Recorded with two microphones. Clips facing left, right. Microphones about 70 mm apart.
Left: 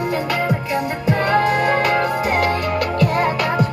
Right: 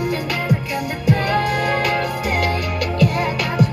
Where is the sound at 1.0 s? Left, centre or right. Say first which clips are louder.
Left 2 dB; left.